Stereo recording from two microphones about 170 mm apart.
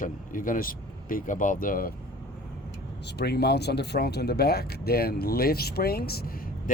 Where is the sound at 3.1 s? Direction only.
75° left (ahead or behind).